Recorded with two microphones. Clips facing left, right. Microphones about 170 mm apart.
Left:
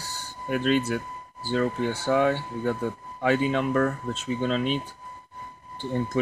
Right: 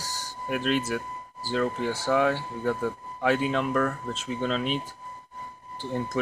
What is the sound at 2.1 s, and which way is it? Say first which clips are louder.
Speech: left 1 dB; centre (ahead or behind).